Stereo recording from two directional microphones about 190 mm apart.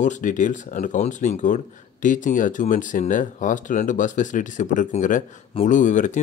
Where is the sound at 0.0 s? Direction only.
40° left (ahead or behind).